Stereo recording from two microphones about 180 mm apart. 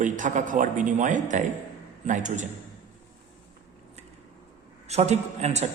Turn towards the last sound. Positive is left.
turn(degrees=-40)  # may be behind; listen again after turning